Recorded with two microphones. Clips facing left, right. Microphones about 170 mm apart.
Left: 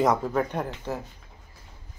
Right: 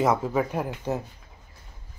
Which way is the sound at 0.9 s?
15° right (ahead or behind).